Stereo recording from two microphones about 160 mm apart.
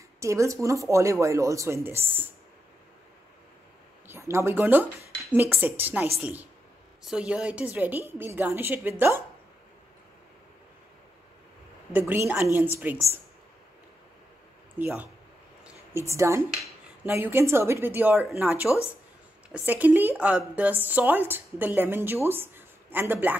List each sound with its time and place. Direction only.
0.2 s speech: 20° right (ahead or behind)
4.1 s speech: 15° right (ahead or behind)
11.9 s speech: 15° right (ahead or behind)
14.8 s speech: 10° right (ahead or behind)